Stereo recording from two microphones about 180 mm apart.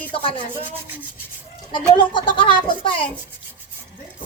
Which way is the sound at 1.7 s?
25° left (ahead or behind).